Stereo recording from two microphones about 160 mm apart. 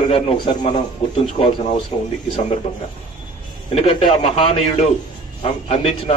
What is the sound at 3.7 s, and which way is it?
A man's voice, 30° left (ahead or behind).